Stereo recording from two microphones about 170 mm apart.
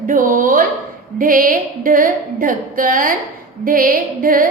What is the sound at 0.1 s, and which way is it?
A woman's voice, 55° right (ahead or behind).